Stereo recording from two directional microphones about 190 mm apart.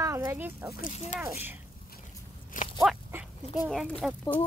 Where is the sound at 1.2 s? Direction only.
10° right (ahead or behind).